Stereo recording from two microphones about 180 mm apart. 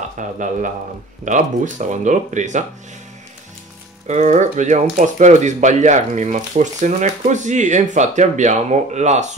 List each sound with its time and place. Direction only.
0.2 s speech: 45° right (ahead or behind)
4.1 s speech: 40° right (ahead or behind)